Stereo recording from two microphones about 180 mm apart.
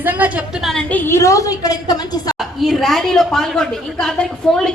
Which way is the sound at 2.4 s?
Centre (ahead or behind).